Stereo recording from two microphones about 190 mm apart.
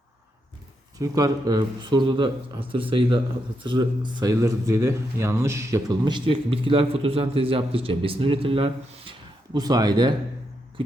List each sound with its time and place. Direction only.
0.9 s speech: 20° right (ahead or behind)